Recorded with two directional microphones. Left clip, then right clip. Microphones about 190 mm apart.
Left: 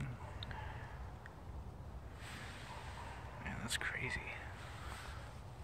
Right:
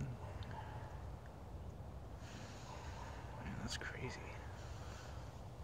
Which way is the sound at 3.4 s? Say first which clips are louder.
Left 7 dB; 5° left (ahead or behind).